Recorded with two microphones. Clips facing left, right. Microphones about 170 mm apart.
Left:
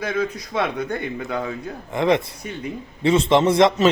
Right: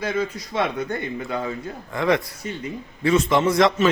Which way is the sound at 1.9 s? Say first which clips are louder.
Left 2 dB; 25° left (ahead or behind).